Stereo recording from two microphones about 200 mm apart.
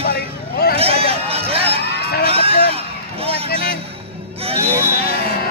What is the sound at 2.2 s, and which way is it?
Music, 30° right (ahead or behind).